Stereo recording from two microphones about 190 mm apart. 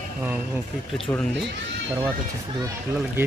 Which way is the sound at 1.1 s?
10° left (ahead or behind).